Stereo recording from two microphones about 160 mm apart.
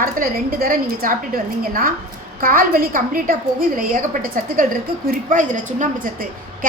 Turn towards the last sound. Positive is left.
turn(degrees=-60)  # may be behind; listen again after turning